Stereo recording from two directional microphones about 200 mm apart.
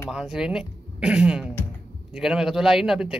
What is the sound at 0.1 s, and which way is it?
Speech, 5° right (ahead or behind).